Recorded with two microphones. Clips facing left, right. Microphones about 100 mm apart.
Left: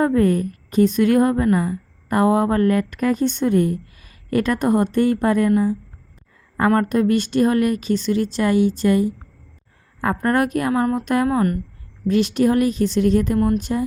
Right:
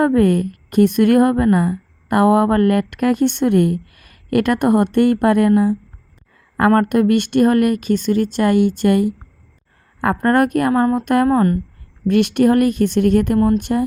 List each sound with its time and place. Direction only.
0.0 s a woman's voice: 65° right (ahead or behind)
6.8 s a woman's voice: 60° right (ahead or behind); by 11.6 s 35° right (ahead or behind)
12.0 s a woman's voice: 60° right (ahead or behind)